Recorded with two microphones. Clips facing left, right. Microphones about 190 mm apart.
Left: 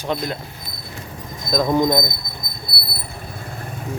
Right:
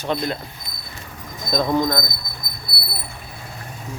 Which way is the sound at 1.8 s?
20° left (ahead or behind).